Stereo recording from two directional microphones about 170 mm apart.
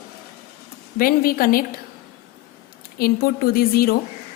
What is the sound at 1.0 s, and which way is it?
Speech, 60° left (ahead or behind).